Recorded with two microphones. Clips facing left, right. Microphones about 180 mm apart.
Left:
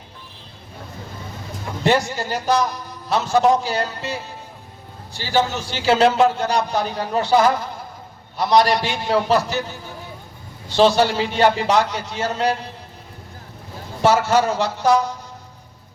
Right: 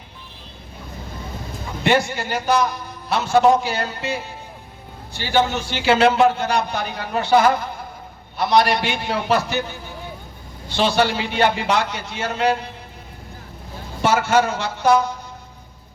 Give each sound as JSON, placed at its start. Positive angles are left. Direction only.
{"t": 1.8, "sound": "a man's voice", "side_deg": 40}
{"t": 14.0, "sound": "a man's voice", "side_deg": 35}